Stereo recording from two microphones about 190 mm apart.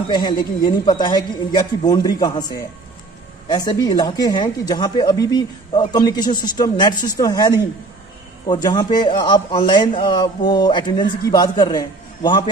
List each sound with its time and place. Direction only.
0.1 s speech: 25° left (ahead or behind)